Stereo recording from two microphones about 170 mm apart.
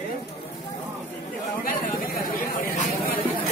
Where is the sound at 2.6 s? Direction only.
55° left (ahead or behind).